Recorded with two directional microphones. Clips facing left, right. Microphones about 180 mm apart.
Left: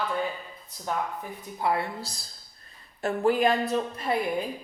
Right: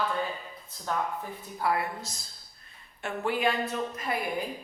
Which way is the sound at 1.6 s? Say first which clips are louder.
Left 2 dB; 25° left (ahead or behind).